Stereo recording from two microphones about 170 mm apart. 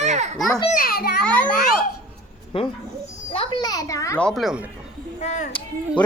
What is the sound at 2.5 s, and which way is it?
A child's voice, 30° left (ahead or behind).